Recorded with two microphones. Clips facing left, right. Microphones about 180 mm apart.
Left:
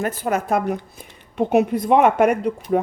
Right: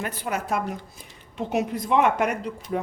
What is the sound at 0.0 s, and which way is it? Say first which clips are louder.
A woman's voice: left 7 dB; 45° left (ahead or behind).